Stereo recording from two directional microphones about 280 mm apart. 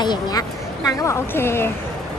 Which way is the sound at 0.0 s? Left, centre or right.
Centre.